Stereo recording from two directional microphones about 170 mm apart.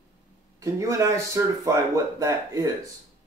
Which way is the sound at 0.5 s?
20° right (ahead or behind).